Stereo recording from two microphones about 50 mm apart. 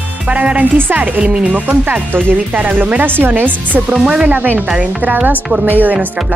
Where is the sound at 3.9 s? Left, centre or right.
Centre.